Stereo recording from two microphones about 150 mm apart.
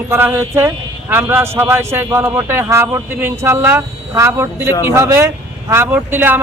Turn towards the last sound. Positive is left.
turn(degrees=-10)  # may be behind; listen again after turning